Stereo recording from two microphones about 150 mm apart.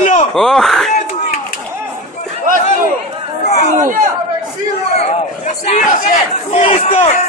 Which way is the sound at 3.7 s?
60° right (ahead or behind).